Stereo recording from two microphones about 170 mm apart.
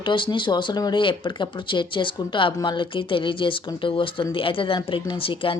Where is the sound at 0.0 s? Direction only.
30° left (ahead or behind).